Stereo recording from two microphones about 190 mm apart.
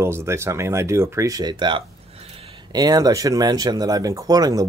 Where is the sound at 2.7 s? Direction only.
20° right (ahead or behind).